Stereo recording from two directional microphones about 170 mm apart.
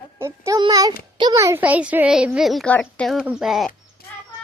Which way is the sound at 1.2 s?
20° right (ahead or behind).